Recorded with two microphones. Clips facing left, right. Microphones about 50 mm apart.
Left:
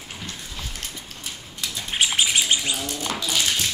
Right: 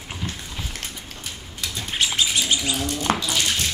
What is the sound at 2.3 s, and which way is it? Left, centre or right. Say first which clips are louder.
Bird: even; left.